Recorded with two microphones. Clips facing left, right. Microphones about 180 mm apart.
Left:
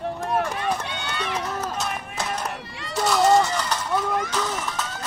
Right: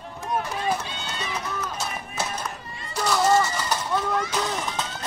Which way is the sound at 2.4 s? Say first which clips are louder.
Left 3 dB; 75° left (ahead or behind).